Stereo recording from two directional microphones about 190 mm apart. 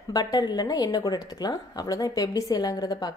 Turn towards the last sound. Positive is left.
turn(degrees=20)  # may be behind; listen again after turning